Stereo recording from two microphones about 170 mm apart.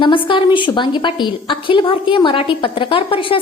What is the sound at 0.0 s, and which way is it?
A woman's voice, 30° left (ahead or behind).